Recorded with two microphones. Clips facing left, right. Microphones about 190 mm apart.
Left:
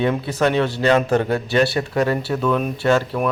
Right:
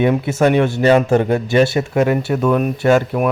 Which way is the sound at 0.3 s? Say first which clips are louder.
Right 4 dB; 15° right (ahead or behind).